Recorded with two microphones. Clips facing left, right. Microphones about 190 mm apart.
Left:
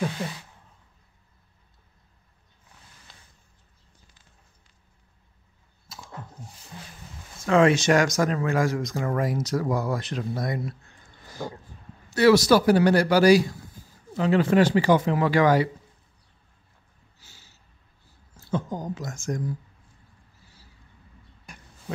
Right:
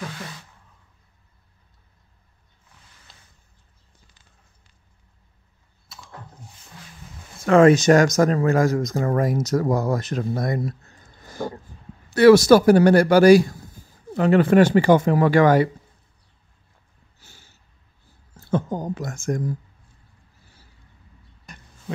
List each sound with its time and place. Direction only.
7.4 s speech: 45° right (ahead or behind)
17.2 s snort: 50° right (ahead or behind)
18.3 s speech: 60° right (ahead or behind)
21.5 s a sound: 10° left (ahead or behind)